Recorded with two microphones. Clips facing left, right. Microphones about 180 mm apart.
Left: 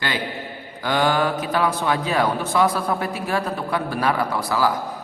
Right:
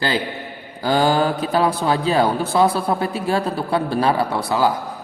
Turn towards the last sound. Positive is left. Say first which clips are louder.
# right 2 dB
turn(degrees=-25)  # may be behind; listen again after turning